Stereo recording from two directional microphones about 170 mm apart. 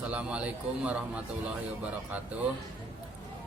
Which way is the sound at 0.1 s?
5° right (ahead or behind).